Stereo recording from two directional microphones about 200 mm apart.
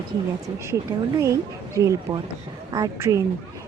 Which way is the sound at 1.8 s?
15° right (ahead or behind).